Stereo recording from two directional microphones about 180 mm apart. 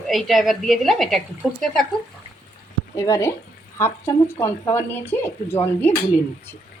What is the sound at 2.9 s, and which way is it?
Speech, 15° left (ahead or behind).